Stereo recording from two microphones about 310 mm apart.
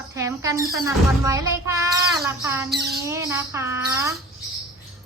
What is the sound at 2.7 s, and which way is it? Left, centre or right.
Speech, right.